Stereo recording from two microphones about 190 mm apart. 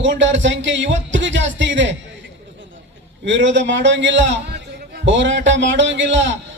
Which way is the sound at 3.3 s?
70° right (ahead or behind).